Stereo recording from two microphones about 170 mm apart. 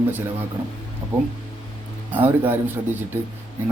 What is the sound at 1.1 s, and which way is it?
Speech, 10° right (ahead or behind).